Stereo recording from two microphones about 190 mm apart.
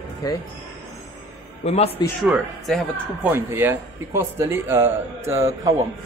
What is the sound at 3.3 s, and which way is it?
Speech, 10° right (ahead or behind).